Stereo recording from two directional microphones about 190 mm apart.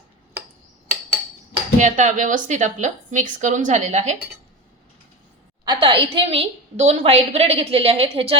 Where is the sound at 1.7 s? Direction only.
40° right (ahead or behind).